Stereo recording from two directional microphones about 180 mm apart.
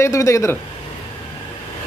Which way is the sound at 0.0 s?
15° left (ahead or behind).